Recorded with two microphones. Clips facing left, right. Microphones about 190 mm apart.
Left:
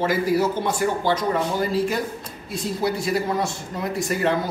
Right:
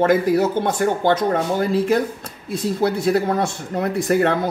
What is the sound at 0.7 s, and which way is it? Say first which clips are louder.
Speech: right 4 dB; 60° right (ahead or behind).